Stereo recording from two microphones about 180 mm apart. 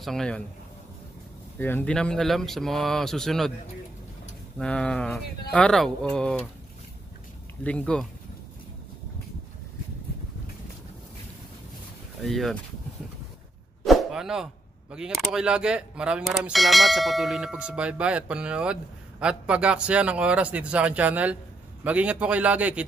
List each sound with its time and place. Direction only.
0.0 s speech: 5° left (ahead or behind)
1.6 s speech: 10° left (ahead or behind)
4.6 s speech: 5° left (ahead or behind)
7.6 s speech: 5° left (ahead or behind)
12.2 s speech: centre (ahead or behind)
13.8 s a man's voice: centre (ahead or behind)